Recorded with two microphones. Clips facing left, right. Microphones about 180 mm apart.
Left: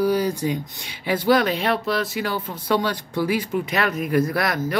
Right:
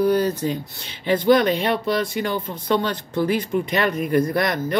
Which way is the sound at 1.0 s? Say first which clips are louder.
Right 3 dB; 5° left (ahead or behind).